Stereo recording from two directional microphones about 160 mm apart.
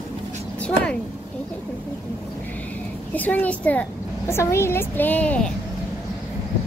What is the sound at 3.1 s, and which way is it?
A woman's voice, 10° left (ahead or behind).